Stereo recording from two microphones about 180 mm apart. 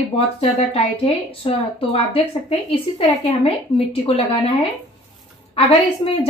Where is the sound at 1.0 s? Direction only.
35° left (ahead or behind).